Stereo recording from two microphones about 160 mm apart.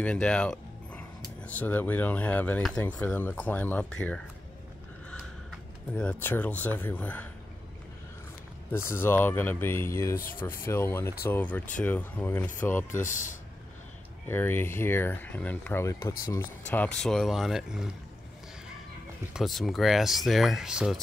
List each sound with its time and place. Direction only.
0.0 s speech: 5° left (ahead or behind)
5.9 s speech: 10° left (ahead or behind)
8.7 s speech: 15° left (ahead or behind)
10.1 s speech: 65° left (ahead or behind)
10.6 s speech: 15° left (ahead or behind)
13.0 s speech: 50° left (ahead or behind)
14.2 s speech: 15° left (ahead or behind); by 17.8 s centre (ahead or behind)
19.3 s speech: centre (ahead or behind)